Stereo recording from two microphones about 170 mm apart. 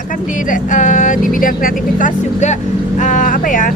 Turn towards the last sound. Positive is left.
turn(degrees=50)  # may be behind; listen again after turning